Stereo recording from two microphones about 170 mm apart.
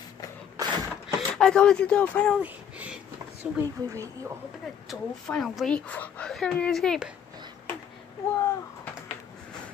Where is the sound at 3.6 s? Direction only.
15° right (ahead or behind).